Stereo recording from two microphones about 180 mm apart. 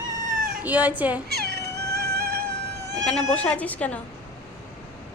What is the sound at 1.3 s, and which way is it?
Cat, 60° right (ahead or behind).